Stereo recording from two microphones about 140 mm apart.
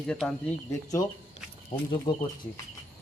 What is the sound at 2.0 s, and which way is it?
Speech, 30° left (ahead or behind).